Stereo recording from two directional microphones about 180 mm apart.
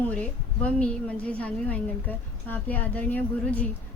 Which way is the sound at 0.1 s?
5° left (ahead or behind).